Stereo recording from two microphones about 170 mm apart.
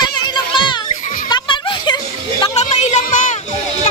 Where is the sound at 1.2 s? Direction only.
25° left (ahead or behind).